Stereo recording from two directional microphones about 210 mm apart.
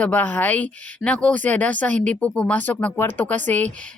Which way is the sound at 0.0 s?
5° left (ahead or behind).